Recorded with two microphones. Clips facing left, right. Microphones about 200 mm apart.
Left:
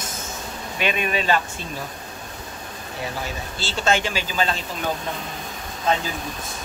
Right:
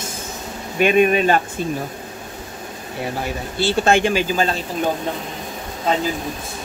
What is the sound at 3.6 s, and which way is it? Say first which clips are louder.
Speech: right 7 dB; 55° right (ahead or behind).